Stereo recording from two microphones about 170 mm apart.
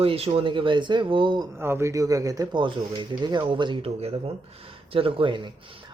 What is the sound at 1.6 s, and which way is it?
Speech, 15° right (ahead or behind).